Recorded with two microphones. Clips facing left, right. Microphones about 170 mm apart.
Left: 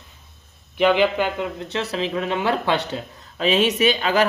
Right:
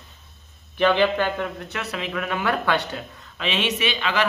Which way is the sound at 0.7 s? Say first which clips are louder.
Left 2 dB; 15° left (ahead or behind).